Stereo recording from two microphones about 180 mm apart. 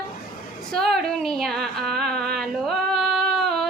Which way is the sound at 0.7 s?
Centre (ahead or behind).